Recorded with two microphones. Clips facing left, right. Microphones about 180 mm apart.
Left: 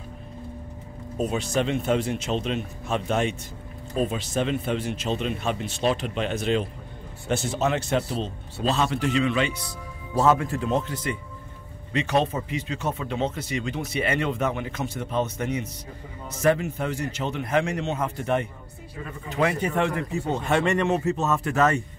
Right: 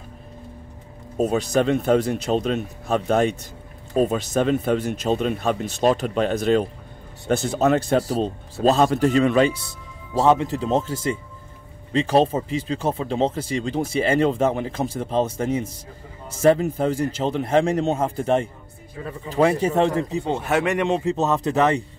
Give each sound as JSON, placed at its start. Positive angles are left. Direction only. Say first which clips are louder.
{"t": 1.1, "sound": "a man's voice", "louder": "right 5 dB", "side_deg": -40}
{"t": 10.2, "sound": "a man's voice", "louder": "right 3 dB", "side_deg": -20}
{"t": 20.3, "sound": "speech", "louder": "even", "side_deg": -5}
{"t": 20.8, "sound": "speech", "louder": "right 2 dB", "side_deg": -15}